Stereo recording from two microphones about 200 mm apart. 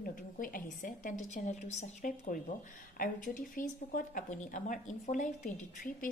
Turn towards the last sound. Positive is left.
turn(degrees=40)  # may be behind; listen again after turning